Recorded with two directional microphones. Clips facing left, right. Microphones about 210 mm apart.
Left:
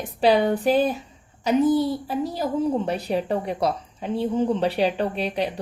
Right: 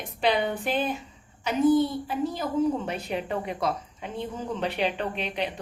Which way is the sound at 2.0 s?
35° left (ahead or behind).